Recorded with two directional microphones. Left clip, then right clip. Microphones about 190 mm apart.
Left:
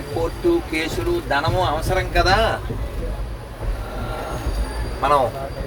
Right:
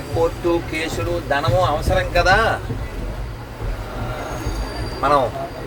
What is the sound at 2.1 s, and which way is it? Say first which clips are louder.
Speech: right 2 dB; 5° right (ahead or behind).